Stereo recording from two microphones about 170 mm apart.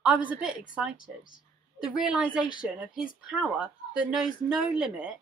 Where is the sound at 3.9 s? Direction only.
5° right (ahead or behind).